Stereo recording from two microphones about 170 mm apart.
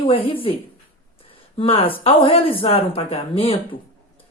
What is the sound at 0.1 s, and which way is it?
Speech, 35° left (ahead or behind).